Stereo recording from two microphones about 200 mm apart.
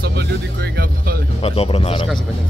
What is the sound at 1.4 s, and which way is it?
Speech, 30° left (ahead or behind).